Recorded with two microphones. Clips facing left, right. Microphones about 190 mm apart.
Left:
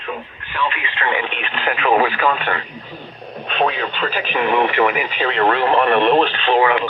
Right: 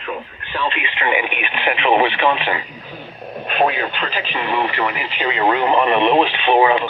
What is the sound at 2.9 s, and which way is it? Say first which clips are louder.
Radio: right 1 dB; 5° right (ahead or behind).